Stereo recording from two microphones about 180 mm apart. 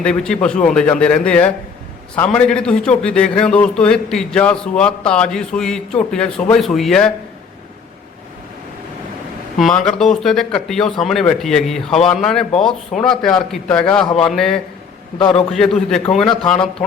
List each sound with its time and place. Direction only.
0.0 s a man's voice: 5° left (ahead or behind)
9.6 s a man's voice: 5° left (ahead or behind)
15.2 s a man's voice: 30° left (ahead or behind)
15.5 s a man's voice: 5° left (ahead or behind)